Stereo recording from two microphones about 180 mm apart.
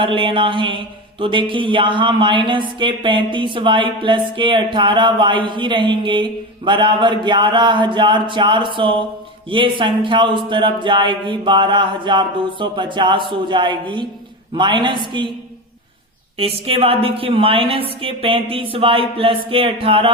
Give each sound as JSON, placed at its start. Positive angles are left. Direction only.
{"t": 0.0, "sound": "speech", "side_deg": -30}
{"t": 16.4, "sound": "speech", "side_deg": -30}